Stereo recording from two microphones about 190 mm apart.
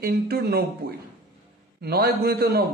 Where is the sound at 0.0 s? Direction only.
55° right (ahead or behind).